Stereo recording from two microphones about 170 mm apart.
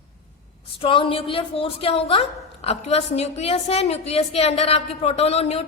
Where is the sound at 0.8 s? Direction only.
30° left (ahead or behind).